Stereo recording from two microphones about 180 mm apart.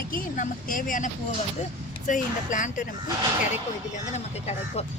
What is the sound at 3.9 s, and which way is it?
Speech, 40° left (ahead or behind).